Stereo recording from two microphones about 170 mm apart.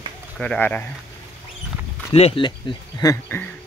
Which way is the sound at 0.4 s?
5° left (ahead or behind).